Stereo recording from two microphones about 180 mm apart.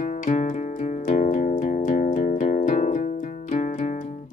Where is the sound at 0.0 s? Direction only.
45° left (ahead or behind).